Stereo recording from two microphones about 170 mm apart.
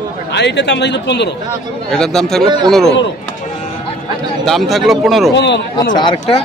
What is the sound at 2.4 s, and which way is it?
Speech, 25° right (ahead or behind).